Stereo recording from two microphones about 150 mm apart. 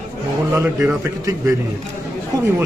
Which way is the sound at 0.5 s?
15° right (ahead or behind).